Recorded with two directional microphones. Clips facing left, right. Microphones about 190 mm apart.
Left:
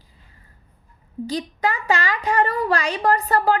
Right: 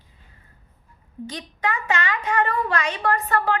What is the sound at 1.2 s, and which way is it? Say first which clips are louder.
A woman's voice: left 5 dB; 35° left (ahead or behind).